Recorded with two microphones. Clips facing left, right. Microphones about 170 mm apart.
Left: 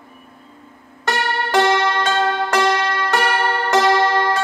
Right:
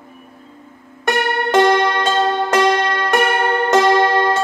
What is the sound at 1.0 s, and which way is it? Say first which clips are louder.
Music: right 3 dB; 15° right (ahead or behind).